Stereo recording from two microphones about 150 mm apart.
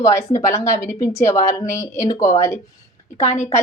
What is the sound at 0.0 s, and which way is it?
Speech, 20° left (ahead or behind).